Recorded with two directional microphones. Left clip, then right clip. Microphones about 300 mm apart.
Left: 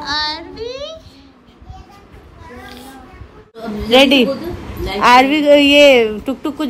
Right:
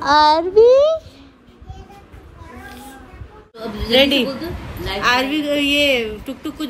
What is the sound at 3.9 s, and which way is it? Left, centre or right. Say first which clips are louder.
Speech: left 4 dB; left.